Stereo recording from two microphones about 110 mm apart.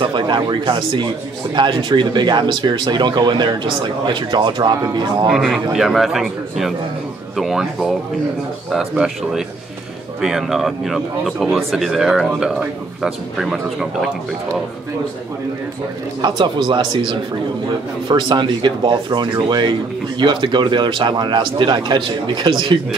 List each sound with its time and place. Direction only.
0.0 s a man's voice: 45° right (ahead or behind)
5.3 s speech: 5° right (ahead or behind)
16.2 s a man's voice: 45° right (ahead or behind)